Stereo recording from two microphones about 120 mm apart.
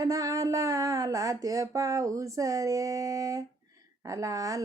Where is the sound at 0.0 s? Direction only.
30° right (ahead or behind).